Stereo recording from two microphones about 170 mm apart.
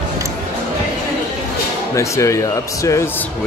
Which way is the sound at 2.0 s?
15° left (ahead or behind).